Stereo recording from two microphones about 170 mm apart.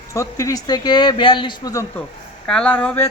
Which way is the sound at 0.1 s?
20° left (ahead or behind).